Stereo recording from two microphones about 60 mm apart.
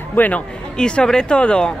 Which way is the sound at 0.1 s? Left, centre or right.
Left.